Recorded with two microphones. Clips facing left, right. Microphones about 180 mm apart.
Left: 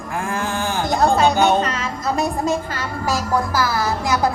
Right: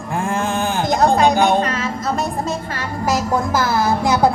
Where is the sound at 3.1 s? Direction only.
20° right (ahead or behind).